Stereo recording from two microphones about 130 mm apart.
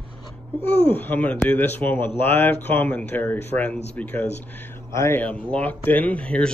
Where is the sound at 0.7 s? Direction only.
15° left (ahead or behind).